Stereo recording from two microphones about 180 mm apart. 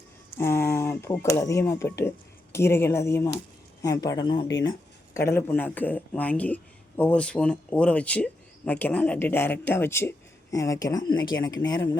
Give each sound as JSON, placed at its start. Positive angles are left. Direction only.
{"t": 0.3, "sound": "speech", "side_deg": 15}